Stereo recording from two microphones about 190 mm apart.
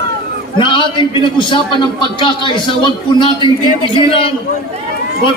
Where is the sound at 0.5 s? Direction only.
25° left (ahead or behind).